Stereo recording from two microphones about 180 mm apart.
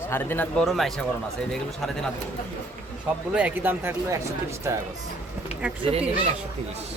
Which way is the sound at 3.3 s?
5° right (ahead or behind).